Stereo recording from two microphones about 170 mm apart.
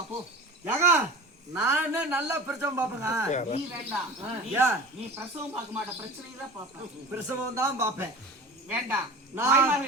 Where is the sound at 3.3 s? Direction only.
45° left (ahead or behind).